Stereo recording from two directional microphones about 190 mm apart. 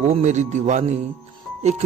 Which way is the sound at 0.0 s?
40° right (ahead or behind).